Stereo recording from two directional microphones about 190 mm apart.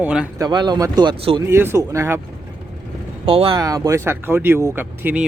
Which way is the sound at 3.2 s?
30° right (ahead or behind).